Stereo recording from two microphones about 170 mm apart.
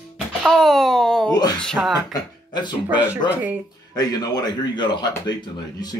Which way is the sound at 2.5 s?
25° left (ahead or behind).